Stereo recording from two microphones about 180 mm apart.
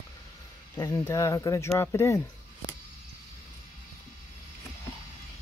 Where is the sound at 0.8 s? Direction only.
20° left (ahead or behind).